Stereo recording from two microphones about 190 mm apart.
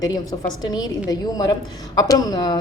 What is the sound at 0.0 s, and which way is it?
A woman's voice, 20° left (ahead or behind).